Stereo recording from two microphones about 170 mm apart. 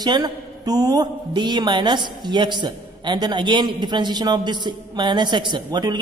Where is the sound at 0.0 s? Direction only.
25° right (ahead or behind).